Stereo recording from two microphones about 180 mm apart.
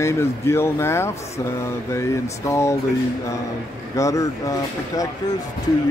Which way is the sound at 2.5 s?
15° left (ahead or behind).